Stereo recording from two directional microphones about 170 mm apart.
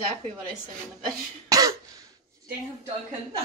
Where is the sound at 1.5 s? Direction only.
20° right (ahead or behind).